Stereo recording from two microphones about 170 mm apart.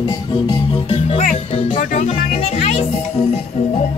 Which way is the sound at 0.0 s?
25° left (ahead or behind).